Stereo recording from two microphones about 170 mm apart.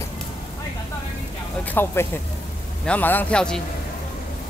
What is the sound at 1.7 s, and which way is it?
A man's voice, 10° left (ahead or behind).